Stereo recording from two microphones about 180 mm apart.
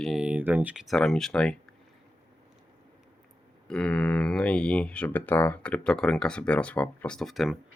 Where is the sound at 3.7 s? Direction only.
5° left (ahead or behind).